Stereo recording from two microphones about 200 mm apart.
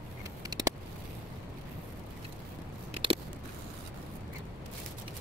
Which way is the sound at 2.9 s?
25° right (ahead or behind).